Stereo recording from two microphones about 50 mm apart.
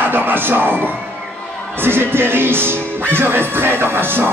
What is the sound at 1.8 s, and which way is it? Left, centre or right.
Music, right.